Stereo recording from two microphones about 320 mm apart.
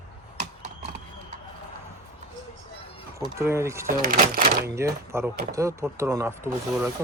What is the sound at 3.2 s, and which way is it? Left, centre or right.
Speech, centre.